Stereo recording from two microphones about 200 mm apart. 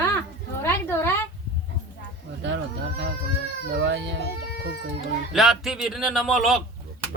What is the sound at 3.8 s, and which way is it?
Speech, 60° right (ahead or behind).